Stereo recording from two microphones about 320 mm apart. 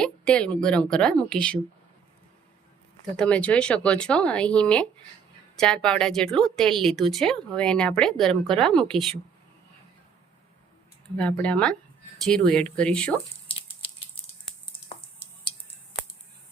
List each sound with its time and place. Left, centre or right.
0.0 s speech: centre
3.2 s speech: centre
11.2 s speech: centre
13.5 s a sound: centre